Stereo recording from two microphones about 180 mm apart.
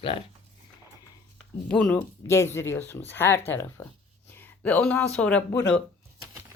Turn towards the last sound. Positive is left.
turn(degrees=5)  # may be behind; listen again after turning